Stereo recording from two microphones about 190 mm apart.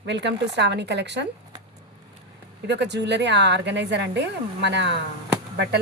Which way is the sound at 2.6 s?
65° right (ahead or behind).